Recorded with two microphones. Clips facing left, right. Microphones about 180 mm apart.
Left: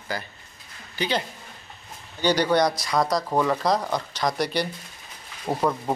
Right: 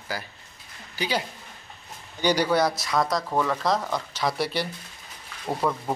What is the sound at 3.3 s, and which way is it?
Speech, 15° left (ahead or behind).